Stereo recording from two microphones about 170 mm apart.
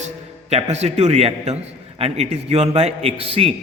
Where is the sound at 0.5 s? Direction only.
40° right (ahead or behind).